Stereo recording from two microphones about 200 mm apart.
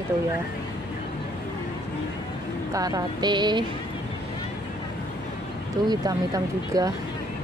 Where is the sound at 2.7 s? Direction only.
20° right (ahead or behind).